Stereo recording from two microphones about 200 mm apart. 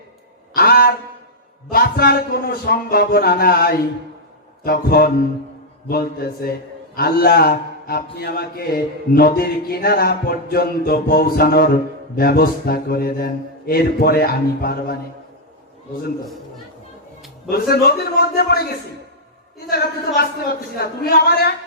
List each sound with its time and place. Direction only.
0.5 s a sound: 50° left (ahead or behind)
1.7 s mantra: 50° left (ahead or behind)
17.5 s mantra: 50° left (ahead or behind)
19.7 s mantra: 50° left (ahead or behind)